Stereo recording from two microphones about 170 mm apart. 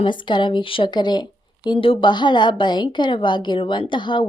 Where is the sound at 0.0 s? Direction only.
30° left (ahead or behind).